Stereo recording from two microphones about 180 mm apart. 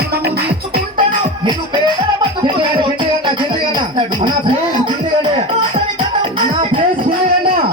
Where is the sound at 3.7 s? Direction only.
25° right (ahead or behind).